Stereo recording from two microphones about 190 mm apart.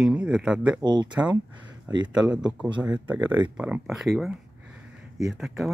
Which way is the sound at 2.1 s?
5° right (ahead or behind).